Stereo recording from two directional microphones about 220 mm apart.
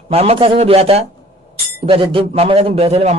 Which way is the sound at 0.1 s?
25° right (ahead or behind).